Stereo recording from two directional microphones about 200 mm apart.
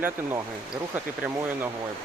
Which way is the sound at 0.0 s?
10° right (ahead or behind).